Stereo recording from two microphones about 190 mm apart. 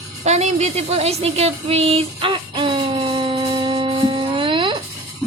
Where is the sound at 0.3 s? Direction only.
35° right (ahead or behind).